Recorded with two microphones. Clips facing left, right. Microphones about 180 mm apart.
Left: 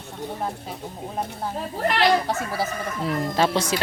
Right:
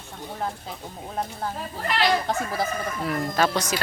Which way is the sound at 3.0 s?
25° left (ahead or behind).